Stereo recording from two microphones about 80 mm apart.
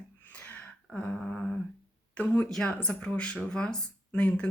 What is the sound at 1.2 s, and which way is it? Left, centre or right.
Humming, centre.